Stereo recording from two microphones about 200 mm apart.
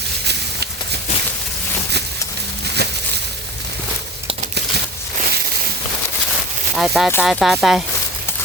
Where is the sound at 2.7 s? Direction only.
55° right (ahead or behind).